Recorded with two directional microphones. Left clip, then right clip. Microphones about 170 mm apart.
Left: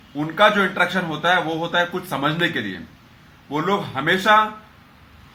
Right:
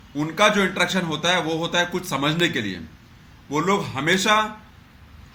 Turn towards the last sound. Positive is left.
turn(degrees=-15)  # may be behind; listen again after turning